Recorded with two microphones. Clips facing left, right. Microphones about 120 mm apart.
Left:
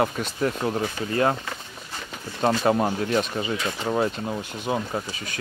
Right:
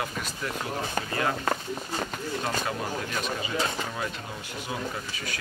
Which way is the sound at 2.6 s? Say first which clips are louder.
Left 9 dB; 45° left (ahead or behind).